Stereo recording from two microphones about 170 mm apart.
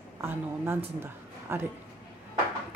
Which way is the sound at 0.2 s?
15° right (ahead or behind).